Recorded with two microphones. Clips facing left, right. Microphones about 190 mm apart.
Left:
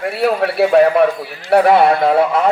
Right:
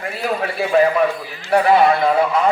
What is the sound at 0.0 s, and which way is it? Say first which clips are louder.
A man's voice: left 6 dB; 70° left (ahead or behind).